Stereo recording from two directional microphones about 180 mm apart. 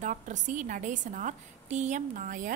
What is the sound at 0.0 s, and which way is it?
A woman's voice, 45° right (ahead or behind).